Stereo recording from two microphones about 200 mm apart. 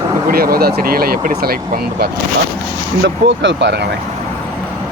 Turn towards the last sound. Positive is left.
turn(degrees=-60)  # may be behind; listen again after turning